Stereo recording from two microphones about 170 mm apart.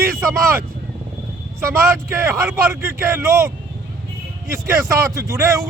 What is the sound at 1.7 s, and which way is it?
Speech, 15° right (ahead or behind).